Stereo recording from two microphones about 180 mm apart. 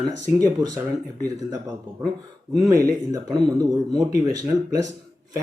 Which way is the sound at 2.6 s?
20° right (ahead or behind).